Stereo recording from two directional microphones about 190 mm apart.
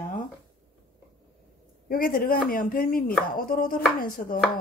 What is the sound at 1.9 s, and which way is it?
Speech, 50° left (ahead or behind).